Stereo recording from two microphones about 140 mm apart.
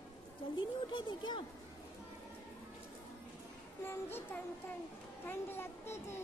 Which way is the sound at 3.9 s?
15° left (ahead or behind).